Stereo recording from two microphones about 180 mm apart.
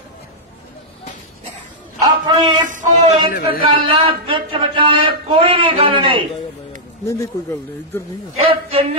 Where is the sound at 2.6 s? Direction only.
45° right (ahead or behind).